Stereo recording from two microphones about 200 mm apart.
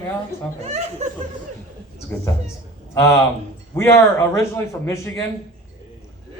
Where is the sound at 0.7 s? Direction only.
30° right (ahead or behind).